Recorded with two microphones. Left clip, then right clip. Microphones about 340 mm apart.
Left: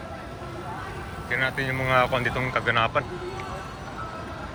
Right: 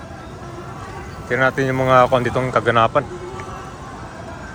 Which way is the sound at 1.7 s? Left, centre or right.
Centre.